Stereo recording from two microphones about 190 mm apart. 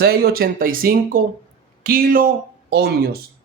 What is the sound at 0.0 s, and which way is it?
Speech, 55° right (ahead or behind).